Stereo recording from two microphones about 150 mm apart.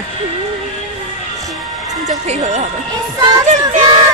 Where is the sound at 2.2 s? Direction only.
50° right (ahead or behind).